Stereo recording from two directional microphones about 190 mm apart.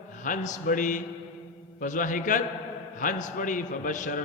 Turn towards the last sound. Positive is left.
turn(degrees=45)  # may be behind; listen again after turning